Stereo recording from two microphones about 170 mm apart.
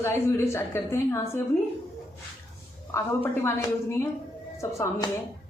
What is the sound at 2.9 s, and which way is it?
A woman's voice, 15° left (ahead or behind).